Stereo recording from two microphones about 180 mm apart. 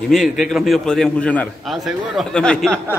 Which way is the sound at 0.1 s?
Centre (ahead or behind).